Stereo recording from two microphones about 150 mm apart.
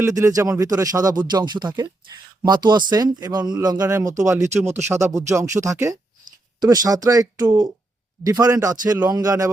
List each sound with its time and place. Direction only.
0.0 s speech: 20° right (ahead or behind)